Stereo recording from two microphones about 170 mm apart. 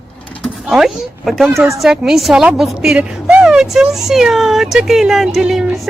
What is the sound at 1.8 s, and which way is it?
A woman's voice, centre (ahead or behind).